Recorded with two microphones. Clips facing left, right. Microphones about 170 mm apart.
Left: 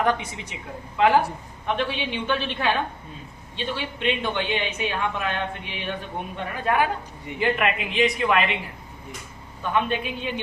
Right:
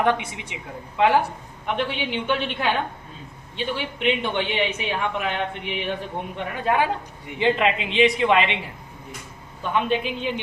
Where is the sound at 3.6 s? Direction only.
15° right (ahead or behind).